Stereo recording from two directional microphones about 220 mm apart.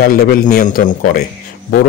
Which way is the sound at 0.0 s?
45° left (ahead or behind).